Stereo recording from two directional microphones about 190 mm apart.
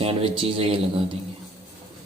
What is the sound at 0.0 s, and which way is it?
Speech, 30° right (ahead or behind).